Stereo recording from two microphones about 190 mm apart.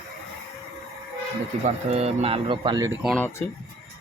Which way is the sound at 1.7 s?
35° right (ahead or behind).